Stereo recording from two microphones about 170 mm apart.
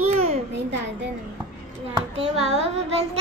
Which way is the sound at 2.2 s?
35° right (ahead or behind).